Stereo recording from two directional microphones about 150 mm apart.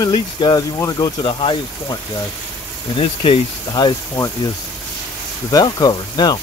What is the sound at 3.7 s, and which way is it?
Speech, 25° left (ahead or behind).